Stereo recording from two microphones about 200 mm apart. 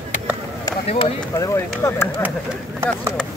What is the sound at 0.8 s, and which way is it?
Speech, 30° left (ahead or behind).